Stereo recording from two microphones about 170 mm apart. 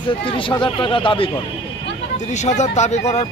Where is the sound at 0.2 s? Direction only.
30° left (ahead or behind).